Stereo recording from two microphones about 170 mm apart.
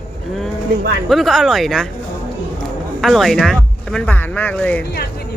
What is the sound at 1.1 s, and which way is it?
Speech, centre (ahead or behind).